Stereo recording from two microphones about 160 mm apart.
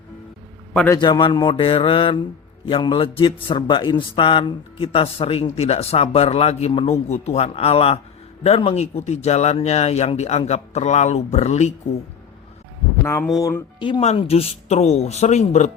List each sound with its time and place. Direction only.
0.9 s a man's voice: 30° left (ahead or behind); by 11.7 s 45° left (ahead or behind)
13.3 s speech: 20° left (ahead or behind)
14.0 s speech: 40° left (ahead or behind)